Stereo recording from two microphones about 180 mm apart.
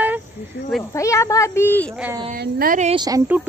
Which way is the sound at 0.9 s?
15° left (ahead or behind).